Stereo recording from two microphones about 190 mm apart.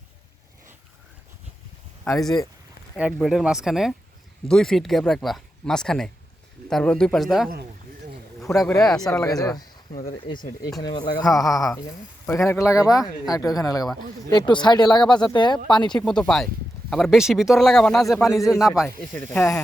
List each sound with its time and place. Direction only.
2.0 s speech: centre (ahead or behind)
9.2 s speech: 20° left (ahead or behind)
11.3 s speech: centre (ahead or behind)
11.8 s speech: 15° left (ahead or behind)
16.0 s speech: 5° left (ahead or behind)
18.9 s speech: 10° left (ahead or behind)